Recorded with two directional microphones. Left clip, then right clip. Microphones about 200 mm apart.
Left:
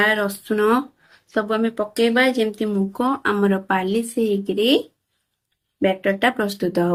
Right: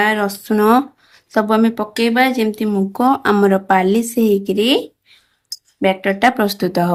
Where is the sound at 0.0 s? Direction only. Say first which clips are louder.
Right 3 dB; 45° right (ahead or behind).